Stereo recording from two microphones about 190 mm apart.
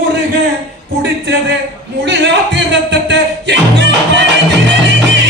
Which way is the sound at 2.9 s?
70° right (ahead or behind).